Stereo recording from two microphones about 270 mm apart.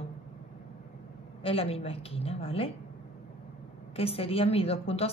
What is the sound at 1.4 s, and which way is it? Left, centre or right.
A woman's voice, left.